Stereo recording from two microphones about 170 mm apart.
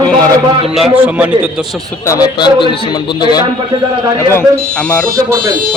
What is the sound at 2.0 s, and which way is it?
A man's voice, 20° left (ahead or behind).